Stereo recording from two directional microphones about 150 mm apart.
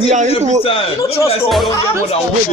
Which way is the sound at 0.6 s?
40° left (ahead or behind).